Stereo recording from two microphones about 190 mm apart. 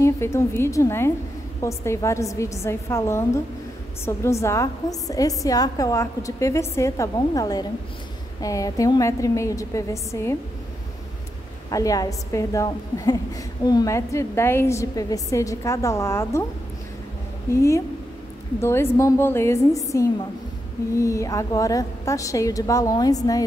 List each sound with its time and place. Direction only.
0.0 s a woman's voice: 15° left (ahead or behind)
11.7 s a woman's voice: 20° left (ahead or behind)
17.6 s a woman's voice: 15° left (ahead or behind)